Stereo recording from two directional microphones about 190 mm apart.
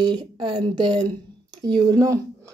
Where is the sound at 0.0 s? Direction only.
25° right (ahead or behind).